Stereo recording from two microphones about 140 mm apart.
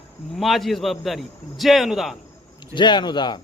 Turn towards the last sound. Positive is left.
turn(degrees=30)  # may be behind; listen again after turning